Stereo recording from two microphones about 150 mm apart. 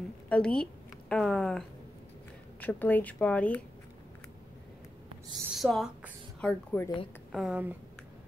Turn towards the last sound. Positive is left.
turn(degrees=-10)  # may be behind; listen again after turning